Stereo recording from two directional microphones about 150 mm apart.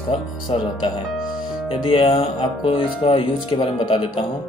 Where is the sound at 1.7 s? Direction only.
35° left (ahead or behind).